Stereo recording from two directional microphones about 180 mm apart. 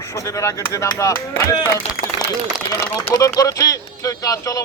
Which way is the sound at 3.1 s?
20° left (ahead or behind).